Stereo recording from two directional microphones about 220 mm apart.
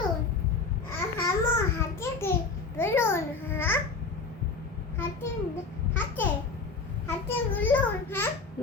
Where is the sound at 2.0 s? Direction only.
10° left (ahead or behind).